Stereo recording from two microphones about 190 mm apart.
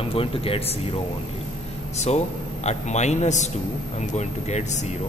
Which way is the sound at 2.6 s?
35° left (ahead or behind).